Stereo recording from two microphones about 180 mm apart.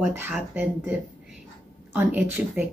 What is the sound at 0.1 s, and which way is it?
Speech, 10° right (ahead or behind).